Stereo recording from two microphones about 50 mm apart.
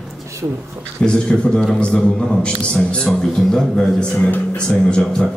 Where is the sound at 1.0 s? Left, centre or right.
Centre.